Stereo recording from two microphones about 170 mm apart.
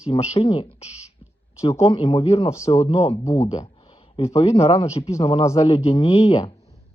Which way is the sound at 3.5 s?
30° left (ahead or behind).